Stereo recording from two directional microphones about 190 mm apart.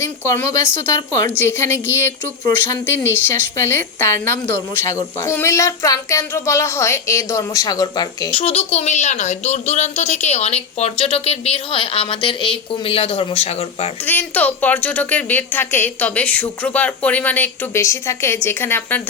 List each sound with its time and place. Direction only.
0.0 s a woman's voice: 15° left (ahead or behind); by 13.9 s 30° left (ahead or behind)
14.0 s a woman's voice: 10° left (ahead or behind)